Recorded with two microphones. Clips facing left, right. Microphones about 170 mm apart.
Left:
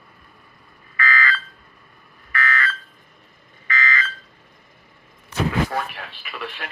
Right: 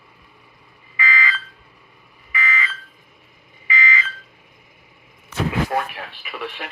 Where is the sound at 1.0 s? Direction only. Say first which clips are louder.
Left 1 dB; 10° right (ahead or behind).